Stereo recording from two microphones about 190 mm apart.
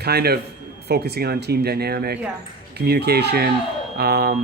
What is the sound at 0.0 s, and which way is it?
Speech, 55° right (ahead or behind).